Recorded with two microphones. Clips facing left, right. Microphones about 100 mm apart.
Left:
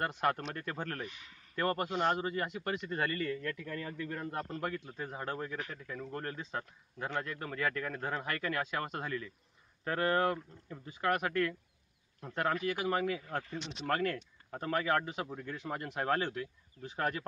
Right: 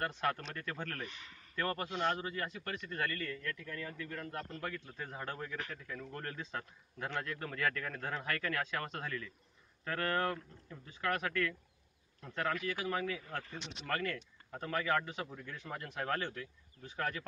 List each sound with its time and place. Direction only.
0.0 s a man's voice: 10° left (ahead or behind)